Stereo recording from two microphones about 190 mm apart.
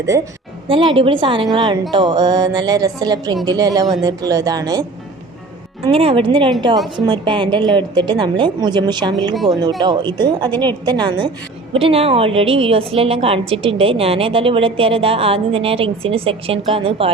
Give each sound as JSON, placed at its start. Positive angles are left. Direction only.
{"t": 0.7, "sound": "a woman's voice", "side_deg": -25}
{"t": 9.3, "sound": "speech", "side_deg": 0}
{"t": 9.8, "sound": "a woman's voice", "side_deg": -25}